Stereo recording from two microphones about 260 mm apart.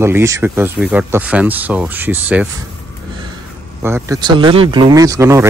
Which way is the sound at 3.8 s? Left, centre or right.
Centre.